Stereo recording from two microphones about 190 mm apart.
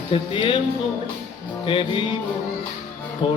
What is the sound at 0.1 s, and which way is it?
Music, 25° left (ahead or behind).